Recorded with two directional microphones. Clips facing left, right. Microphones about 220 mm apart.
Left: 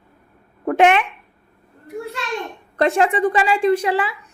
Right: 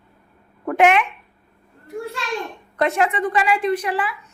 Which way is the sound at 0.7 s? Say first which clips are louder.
Left 1 dB; 30° left (ahead or behind).